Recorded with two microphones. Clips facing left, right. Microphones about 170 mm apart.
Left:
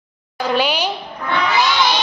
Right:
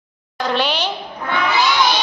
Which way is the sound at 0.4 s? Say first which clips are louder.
Left 2 dB; 10° left (ahead or behind).